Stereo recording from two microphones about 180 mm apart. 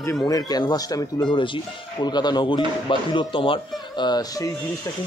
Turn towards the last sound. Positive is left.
turn(degrees=20)  # may be behind; listen again after turning